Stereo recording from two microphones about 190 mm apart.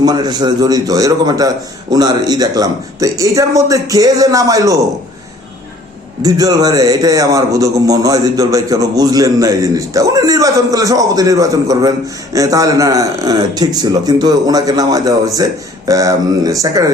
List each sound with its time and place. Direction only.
0.0 s a man's voice: 20° right (ahead or behind)
6.2 s a man's voice: 20° right (ahead or behind)